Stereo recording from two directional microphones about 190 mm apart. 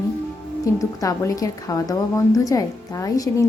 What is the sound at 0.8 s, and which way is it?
A woman's voice, 15° left (ahead or behind).